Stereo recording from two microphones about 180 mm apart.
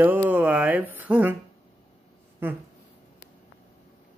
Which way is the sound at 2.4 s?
10° right (ahead or behind).